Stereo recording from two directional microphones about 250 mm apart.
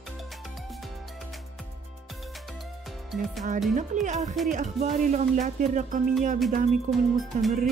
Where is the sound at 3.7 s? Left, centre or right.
Right.